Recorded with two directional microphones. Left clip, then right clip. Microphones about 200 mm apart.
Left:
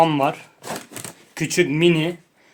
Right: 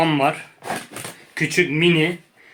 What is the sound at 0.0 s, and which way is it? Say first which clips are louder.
Speech: left 1 dB; 30° left (ahead or behind).